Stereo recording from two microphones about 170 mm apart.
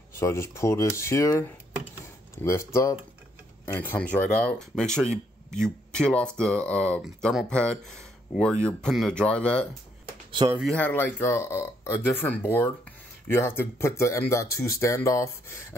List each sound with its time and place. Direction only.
0.1 s speech: 15° left (ahead or behind)